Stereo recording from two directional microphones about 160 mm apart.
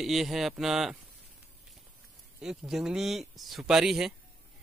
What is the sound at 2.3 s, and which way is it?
Speech, 5° right (ahead or behind).